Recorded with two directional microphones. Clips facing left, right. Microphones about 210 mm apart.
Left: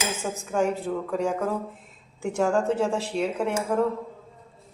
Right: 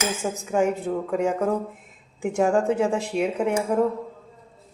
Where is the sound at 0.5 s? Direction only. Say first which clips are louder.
Right 2 dB; 15° right (ahead or behind).